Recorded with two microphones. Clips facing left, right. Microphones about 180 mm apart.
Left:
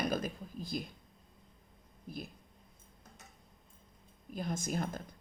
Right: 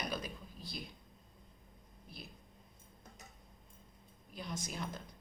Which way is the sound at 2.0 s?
50° left (ahead or behind).